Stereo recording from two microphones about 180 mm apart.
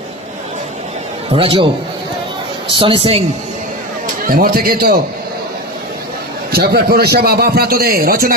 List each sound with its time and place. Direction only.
1.3 s a woman's voice: 30° right (ahead or behind)
2.6 s a woman's voice: 30° right (ahead or behind)
4.0 s a man's voice: 55° right (ahead or behind)
6.5 s a man's voice: 60° right (ahead or behind)